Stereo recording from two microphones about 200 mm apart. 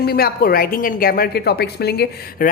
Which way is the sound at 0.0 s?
50° left (ahead or behind).